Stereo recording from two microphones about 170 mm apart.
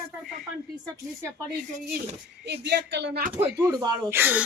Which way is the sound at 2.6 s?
90° right.